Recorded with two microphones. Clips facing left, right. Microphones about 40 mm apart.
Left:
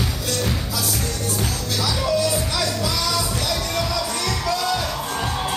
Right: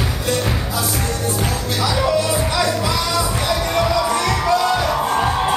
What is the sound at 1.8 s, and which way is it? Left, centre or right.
Music, right.